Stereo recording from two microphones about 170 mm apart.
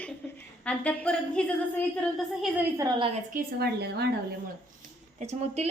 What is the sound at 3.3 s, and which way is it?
Speech, 75° right (ahead or behind).